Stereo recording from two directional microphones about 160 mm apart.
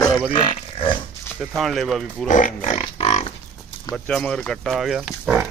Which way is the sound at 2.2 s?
55° left (ahead or behind).